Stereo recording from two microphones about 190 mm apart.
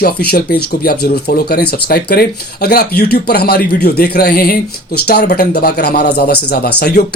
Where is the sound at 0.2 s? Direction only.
55° left (ahead or behind).